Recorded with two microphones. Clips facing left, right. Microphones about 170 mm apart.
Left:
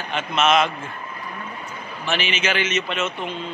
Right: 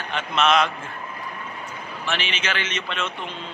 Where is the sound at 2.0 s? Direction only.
5° left (ahead or behind).